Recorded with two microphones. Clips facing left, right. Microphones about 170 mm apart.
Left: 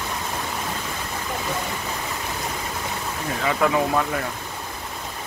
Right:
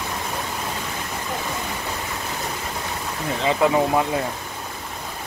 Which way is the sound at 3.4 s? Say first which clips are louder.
Right 2 dB; 20° right (ahead or behind).